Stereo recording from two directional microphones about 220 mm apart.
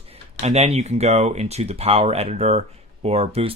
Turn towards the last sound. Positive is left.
turn(degrees=-25)  # may be behind; listen again after turning